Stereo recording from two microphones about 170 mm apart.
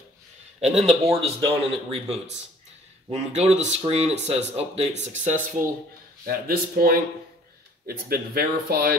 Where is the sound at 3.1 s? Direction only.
40° right (ahead or behind).